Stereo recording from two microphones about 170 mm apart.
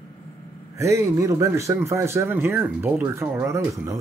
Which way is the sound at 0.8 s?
15° right (ahead or behind).